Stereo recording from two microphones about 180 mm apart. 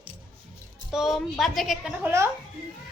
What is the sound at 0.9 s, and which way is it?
A woman's voice, centre (ahead or behind).